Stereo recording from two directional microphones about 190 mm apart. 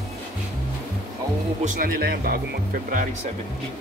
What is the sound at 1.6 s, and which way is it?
Speech, 45° right (ahead or behind).